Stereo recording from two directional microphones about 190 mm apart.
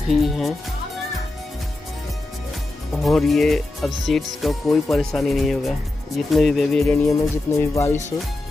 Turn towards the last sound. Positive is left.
turn(degrees=15)  # may be behind; listen again after turning